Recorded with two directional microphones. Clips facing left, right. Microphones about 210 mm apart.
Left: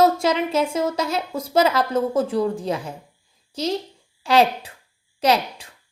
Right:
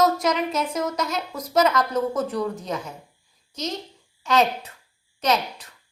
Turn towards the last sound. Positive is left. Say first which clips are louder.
# left 3 dB
turn(degrees=30)  # may be behind; listen again after turning